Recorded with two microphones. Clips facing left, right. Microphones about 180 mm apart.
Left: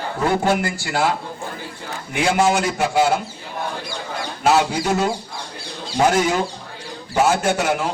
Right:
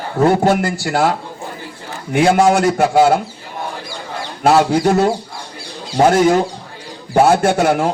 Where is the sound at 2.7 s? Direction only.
55° right (ahead or behind).